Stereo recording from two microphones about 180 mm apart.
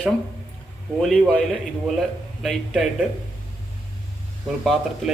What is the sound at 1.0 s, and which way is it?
Speech, centre (ahead or behind).